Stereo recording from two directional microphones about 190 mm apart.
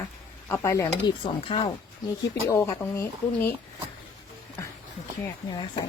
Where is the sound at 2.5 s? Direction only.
15° left (ahead or behind).